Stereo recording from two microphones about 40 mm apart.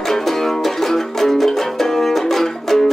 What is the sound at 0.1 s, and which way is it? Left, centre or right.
Music, centre.